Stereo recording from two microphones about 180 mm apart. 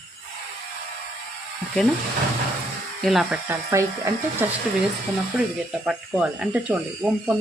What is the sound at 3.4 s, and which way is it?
Speech, 15° right (ahead or behind).